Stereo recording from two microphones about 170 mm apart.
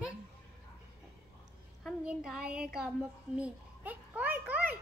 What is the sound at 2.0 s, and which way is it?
Child singing, 5° right (ahead or behind).